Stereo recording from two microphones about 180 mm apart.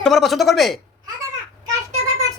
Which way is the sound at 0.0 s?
Centre (ahead or behind).